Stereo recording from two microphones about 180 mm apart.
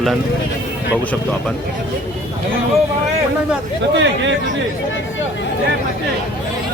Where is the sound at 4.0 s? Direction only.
90° right.